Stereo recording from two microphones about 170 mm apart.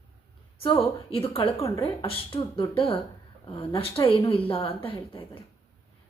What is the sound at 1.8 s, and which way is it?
A woman's voice, 35° left (ahead or behind).